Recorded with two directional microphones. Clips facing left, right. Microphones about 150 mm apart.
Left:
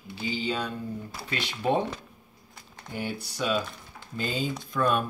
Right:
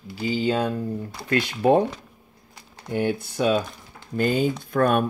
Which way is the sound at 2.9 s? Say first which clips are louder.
Right 9 dB; 55° right (ahead or behind).